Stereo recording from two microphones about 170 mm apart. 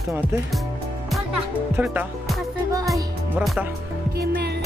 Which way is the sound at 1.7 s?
10° right (ahead or behind).